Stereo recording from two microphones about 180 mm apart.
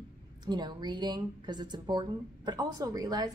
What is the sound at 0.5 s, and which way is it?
Speech, 25° right (ahead or behind).